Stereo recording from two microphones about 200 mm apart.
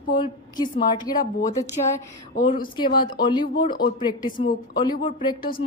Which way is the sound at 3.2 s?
20° left (ahead or behind).